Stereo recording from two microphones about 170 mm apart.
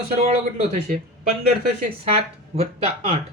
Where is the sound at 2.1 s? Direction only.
35° right (ahead or behind).